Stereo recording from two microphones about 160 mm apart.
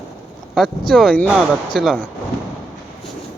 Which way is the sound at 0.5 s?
Centre (ahead or behind).